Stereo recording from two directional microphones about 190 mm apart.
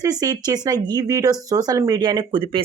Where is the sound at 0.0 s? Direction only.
20° right (ahead or behind).